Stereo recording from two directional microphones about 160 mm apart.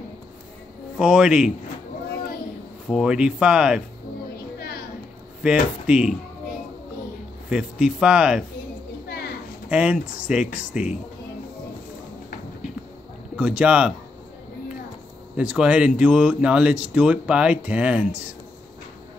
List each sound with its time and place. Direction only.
0.9 s speech: 5° right (ahead or behind)
2.9 s speech: 5° right (ahead or behind)
4.6 s a sound: 75° left (ahead or behind)
5.4 s speech: 5° right (ahead or behind)
7.4 s speech: 5° right (ahead or behind)
9.7 s speech: 5° right (ahead or behind)
13.4 s speech: 5° right (ahead or behind)
15.3 s speech: 10° right (ahead or behind)